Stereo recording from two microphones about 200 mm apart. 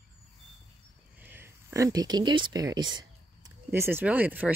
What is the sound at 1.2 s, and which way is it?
Speech, 10° right (ahead or behind).